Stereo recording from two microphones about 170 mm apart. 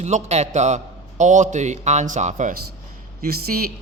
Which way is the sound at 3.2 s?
65° right (ahead or behind).